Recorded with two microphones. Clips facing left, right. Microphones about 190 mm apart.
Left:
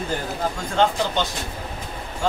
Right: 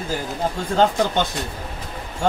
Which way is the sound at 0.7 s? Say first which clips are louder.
Right 3 dB; 50° right (ahead or behind).